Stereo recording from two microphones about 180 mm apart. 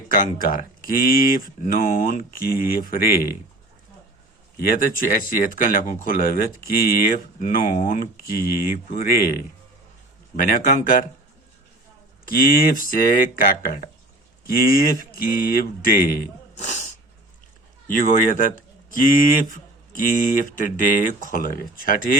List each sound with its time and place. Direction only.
0.1 s speech: 50° left (ahead or behind)
4.5 s speech: 50° left (ahead or behind)
12.2 s speech: 50° left (ahead or behind)
16.6 s speech: 40° left (ahead or behind)
17.8 s speech: 50° left (ahead or behind)